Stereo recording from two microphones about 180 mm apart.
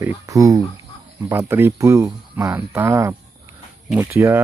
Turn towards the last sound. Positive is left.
turn(degrees=-15)  # may be behind; listen again after turning